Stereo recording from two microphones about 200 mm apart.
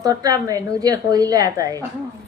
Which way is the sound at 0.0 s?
20° right (ahead or behind).